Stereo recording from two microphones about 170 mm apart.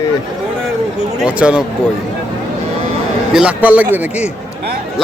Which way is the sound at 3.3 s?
5° right (ahead or behind).